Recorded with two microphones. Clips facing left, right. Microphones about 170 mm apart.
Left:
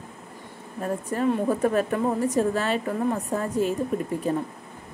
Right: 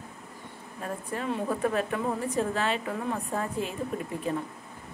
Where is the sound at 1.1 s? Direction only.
45° left (ahead or behind).